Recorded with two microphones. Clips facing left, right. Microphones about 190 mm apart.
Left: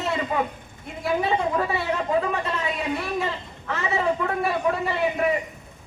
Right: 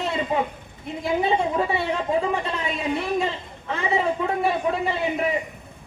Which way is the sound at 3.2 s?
25° right (ahead or behind).